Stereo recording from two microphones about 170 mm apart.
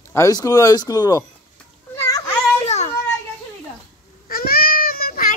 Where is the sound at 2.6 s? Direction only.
40° left (ahead or behind).